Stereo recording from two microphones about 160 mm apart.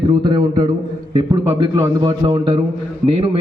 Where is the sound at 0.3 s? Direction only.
25° right (ahead or behind).